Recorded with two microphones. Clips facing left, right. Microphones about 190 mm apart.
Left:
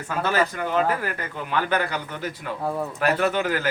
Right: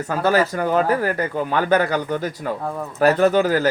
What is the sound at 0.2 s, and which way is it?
Speech, 40° right (ahead or behind).